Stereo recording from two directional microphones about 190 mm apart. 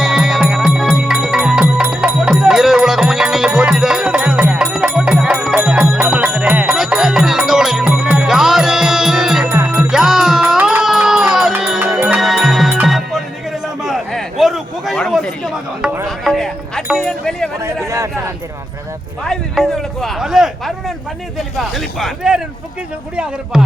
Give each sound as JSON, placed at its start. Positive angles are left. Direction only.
{"t": 0.0, "sound": "music", "side_deg": 0}
{"t": 9.5, "sound": "music", "side_deg": -15}
{"t": 13.8, "sound": "a sound", "side_deg": 0}
{"t": 16.0, "sound": "music", "side_deg": 0}
{"t": 17.8, "sound": "a sound", "side_deg": -15}
{"t": 19.2, "sound": "speech", "side_deg": 0}